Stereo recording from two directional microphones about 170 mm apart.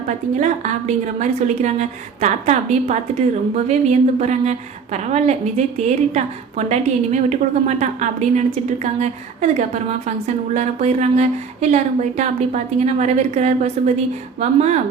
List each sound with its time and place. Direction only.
0.3 s a woman's voice: 45° right (ahead or behind)